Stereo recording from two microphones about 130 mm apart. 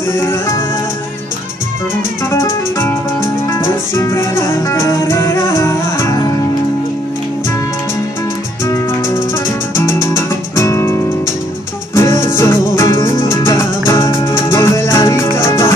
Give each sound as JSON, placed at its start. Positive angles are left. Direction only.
{"t": 2.3, "sound": "music", "side_deg": 20}
{"t": 9.8, "sound": "music", "side_deg": 20}